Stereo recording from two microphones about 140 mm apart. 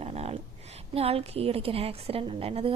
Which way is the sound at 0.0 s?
45° right (ahead or behind).